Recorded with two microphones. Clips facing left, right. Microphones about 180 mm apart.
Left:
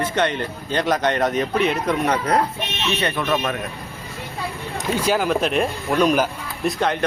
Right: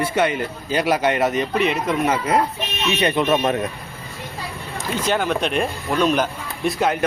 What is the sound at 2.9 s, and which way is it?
Speech, 15° right (ahead or behind).